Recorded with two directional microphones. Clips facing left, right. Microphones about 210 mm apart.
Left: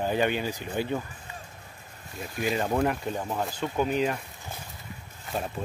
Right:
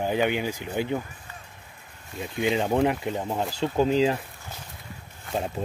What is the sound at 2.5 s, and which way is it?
Speech, 20° right (ahead or behind).